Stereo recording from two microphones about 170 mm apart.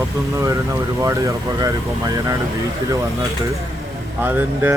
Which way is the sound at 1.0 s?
20° right (ahead or behind).